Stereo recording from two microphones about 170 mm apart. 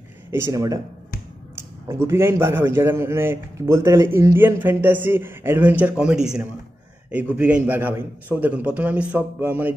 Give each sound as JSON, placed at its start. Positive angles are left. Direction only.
{"t": 0.3, "sound": "speech", "side_deg": -15}
{"t": 1.9, "sound": "a man's voice", "side_deg": -15}